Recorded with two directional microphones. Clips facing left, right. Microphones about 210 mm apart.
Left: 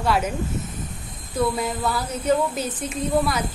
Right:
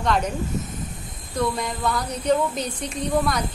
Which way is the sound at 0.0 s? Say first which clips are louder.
Left 1 dB; 5° left (ahead or behind).